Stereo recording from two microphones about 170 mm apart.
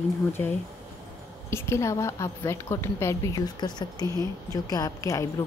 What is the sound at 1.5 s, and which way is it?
A woman's voice, 15° left (ahead or behind).